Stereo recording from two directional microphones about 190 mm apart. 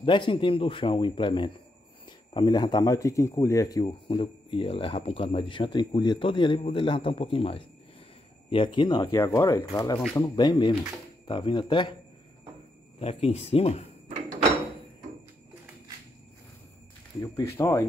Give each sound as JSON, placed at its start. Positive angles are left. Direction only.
{"t": 0.0, "sound": "speech", "side_deg": 25}
{"t": 9.5, "sound": "speech", "side_deg": 25}
{"t": 13.0, "sound": "speech", "side_deg": 30}
{"t": 17.2, "sound": "speech", "side_deg": 15}